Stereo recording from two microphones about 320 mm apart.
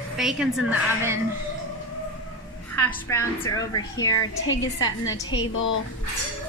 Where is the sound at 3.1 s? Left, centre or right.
Centre.